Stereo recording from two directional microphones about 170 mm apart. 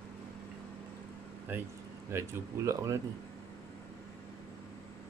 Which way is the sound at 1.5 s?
10° right (ahead or behind).